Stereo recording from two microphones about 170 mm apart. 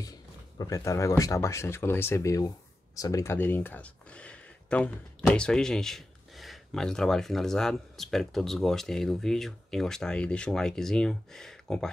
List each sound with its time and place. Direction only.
0.6 s speech: 20° left (ahead or behind); by 11.9 s 5° left (ahead or behind)